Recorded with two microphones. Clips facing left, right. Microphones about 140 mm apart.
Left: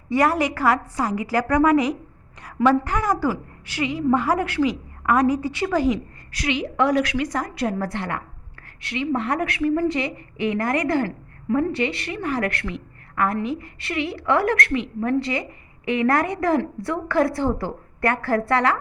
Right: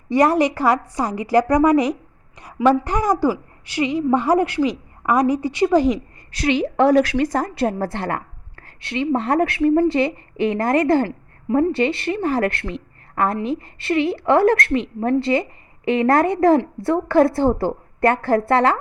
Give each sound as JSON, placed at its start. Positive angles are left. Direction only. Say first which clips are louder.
{"t": 0.1, "sound": "a woman's voice", "louder": "right 4 dB", "side_deg": -20}
{"t": 2.4, "sound": "a sound", "louder": "right 2 dB", "side_deg": -10}
{"t": 2.8, "sound": "a woman's voice", "louder": "right 4 dB", "side_deg": -20}
{"t": 6.4, "sound": "a woman's voice", "louder": "right 5 dB", "side_deg": -35}